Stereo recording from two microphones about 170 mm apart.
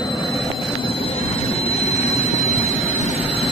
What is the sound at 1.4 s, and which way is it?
Vehicle, 35° left (ahead or behind).